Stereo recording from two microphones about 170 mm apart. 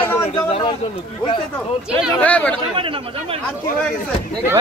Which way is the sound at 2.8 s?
30° right (ahead or behind).